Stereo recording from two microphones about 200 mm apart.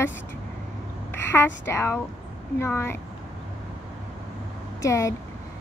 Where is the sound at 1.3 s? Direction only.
15° left (ahead or behind).